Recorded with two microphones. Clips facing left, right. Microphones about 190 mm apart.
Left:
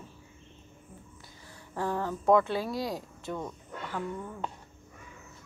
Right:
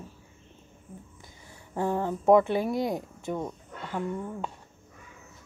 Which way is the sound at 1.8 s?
20° right (ahead or behind).